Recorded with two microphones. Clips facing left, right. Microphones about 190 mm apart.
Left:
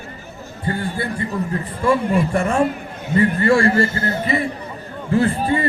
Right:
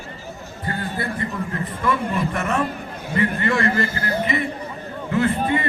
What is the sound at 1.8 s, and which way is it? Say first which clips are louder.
A man's voice: left 5 dB; 30° left (ahead or behind).